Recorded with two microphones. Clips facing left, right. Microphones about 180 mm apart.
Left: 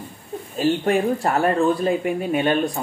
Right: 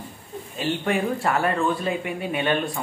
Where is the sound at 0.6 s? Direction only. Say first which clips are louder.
Left 5 dB; 40° left (ahead or behind).